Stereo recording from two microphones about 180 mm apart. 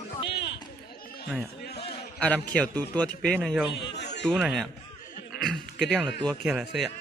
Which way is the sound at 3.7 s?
70° left (ahead or behind).